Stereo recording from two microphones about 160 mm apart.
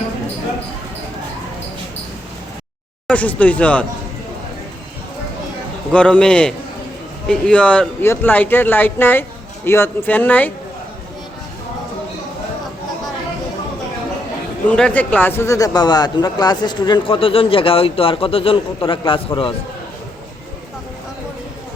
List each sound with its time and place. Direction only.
3.1 s speech: 10° left (ahead or behind)
5.9 s speech: 5° left (ahead or behind)
14.7 s speech: 5° left (ahead or behind); by 19.2 s 35° left (ahead or behind)